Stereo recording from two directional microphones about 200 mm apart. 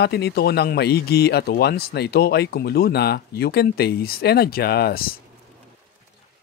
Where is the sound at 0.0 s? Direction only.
55° left (ahead or behind).